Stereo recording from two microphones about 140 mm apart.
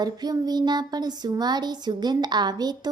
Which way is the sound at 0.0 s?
30° right (ahead or behind).